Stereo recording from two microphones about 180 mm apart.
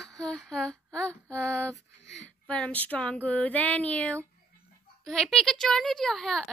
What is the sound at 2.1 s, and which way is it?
Speech, 5° left (ahead or behind).